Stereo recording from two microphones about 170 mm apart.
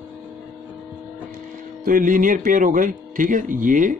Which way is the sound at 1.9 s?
55° right (ahead or behind).